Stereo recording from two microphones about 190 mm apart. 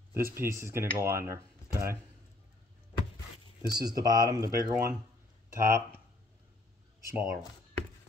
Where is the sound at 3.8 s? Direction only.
20° right (ahead or behind).